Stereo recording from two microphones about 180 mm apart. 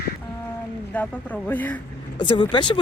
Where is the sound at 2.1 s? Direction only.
25° left (ahead or behind).